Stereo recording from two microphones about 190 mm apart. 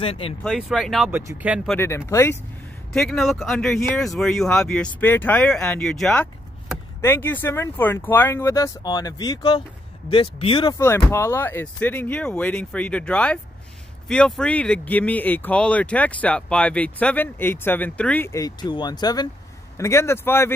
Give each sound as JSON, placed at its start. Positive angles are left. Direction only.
{"t": 0.0, "sound": "speech", "side_deg": 30}
{"t": 0.4, "sound": "speech", "side_deg": 0}
{"t": 1.8, "sound": "speech", "side_deg": 15}
{"t": 2.9, "sound": "speech", "side_deg": 0}
{"t": 10.8, "sound": "speech", "side_deg": 15}